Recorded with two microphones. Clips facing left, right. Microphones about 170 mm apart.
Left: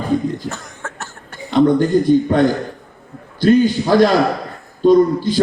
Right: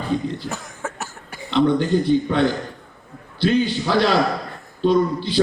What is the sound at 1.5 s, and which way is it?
A man's voice, 45° left (ahead or behind).